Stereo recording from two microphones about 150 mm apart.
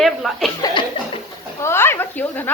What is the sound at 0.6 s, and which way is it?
Chuckle, 30° left (ahead or behind).